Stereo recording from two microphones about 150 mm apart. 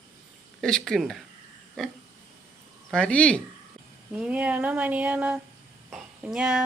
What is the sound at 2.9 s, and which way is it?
Speech, 5° left (ahead or behind).